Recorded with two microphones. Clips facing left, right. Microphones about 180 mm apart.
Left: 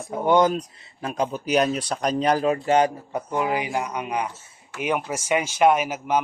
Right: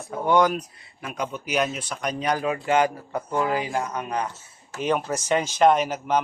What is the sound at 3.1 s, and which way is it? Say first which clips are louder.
A man's voice: even; 15° left (ahead or behind).